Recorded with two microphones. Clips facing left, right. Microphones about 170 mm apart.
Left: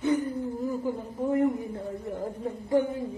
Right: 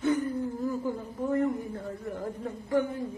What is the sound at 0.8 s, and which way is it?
A man's voice, 15° left (ahead or behind).